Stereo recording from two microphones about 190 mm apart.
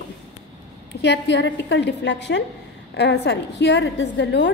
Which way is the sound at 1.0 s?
65° left (ahead or behind).